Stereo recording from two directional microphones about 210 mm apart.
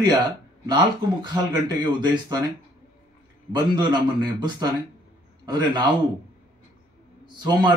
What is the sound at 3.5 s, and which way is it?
Speech, 20° right (ahead or behind).